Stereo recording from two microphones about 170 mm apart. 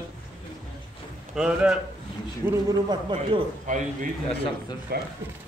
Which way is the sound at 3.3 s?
30° right (ahead or behind).